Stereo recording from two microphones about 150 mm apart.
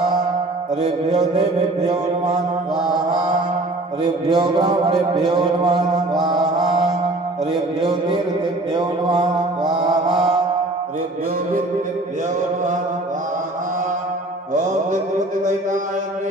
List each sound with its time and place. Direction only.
4.0 s a man's voice: 30° right (ahead or behind)
6.2 s mantra: 30° right (ahead or behind)
7.5 s a man's voice: 25° right (ahead or behind)
14.5 s music: 55° right (ahead or behind)